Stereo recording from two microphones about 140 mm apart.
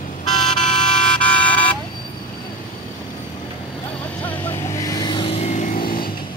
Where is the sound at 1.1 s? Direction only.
10° left (ahead or behind).